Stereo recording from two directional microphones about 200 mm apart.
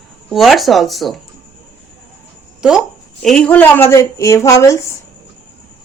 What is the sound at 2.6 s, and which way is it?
A woman's voice, 5° right (ahead or behind).